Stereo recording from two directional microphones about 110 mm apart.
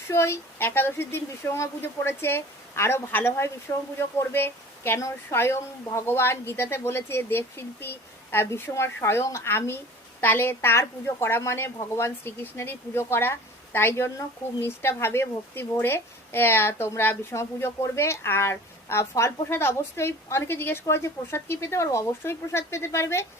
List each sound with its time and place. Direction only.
0.1 s a woman's voice: 25° left (ahead or behind)